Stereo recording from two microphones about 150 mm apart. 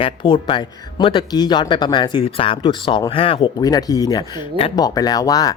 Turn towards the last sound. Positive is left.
turn(degrees=25)  # may be behind; listen again after turning